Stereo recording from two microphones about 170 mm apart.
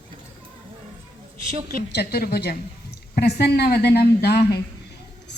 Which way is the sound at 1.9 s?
70° left (ahead or behind).